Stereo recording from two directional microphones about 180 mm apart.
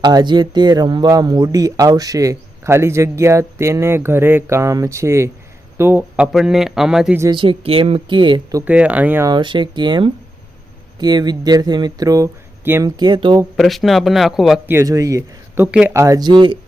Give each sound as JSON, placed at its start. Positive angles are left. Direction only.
{"t": 0.0, "sound": "a man's voice", "side_deg": -25}
{"t": 7.2, "sound": "speech", "side_deg": -25}
{"t": 8.6, "sound": "speech", "side_deg": -10}
{"t": 9.3, "sound": "speech", "side_deg": -25}
{"t": 13.6, "sound": "a man's voice", "side_deg": 0}
{"t": 14.7, "sound": "speech", "side_deg": -15}